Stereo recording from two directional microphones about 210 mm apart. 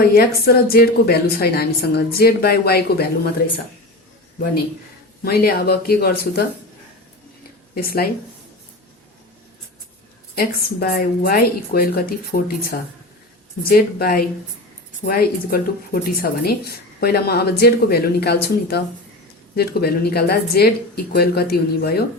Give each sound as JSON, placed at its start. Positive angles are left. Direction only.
{"t": 0.0, "sound": "speech", "side_deg": 45}
{"t": 5.2, "sound": "speech", "side_deg": 45}
{"t": 7.8, "sound": "speech", "side_deg": 45}
{"t": 10.3, "sound": "speech", "side_deg": 45}